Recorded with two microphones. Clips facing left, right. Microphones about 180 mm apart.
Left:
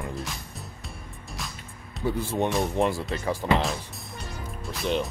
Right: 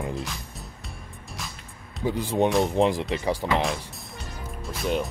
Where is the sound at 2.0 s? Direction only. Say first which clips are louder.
Right 3 dB; 15° right (ahead or behind).